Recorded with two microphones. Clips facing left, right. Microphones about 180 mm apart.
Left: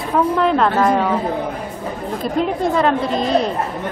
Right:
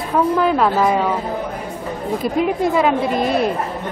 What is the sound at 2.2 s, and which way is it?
Speech, 5° right (ahead or behind).